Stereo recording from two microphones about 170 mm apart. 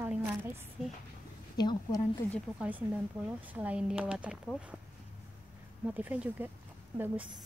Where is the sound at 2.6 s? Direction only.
10° right (ahead or behind).